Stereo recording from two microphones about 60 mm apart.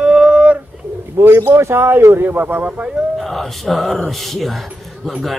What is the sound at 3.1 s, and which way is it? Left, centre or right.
A man's voice, centre.